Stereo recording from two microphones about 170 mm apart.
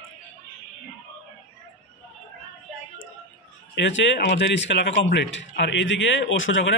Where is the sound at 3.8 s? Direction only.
90° left.